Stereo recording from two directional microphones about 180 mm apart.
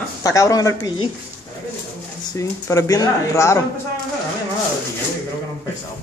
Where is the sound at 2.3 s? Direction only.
20° left (ahead or behind).